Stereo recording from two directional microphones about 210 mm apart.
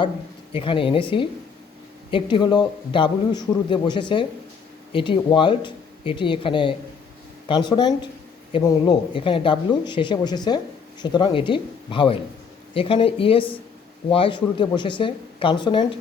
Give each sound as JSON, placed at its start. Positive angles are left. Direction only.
{"t": 0.5, "sound": "speech", "side_deg": 25}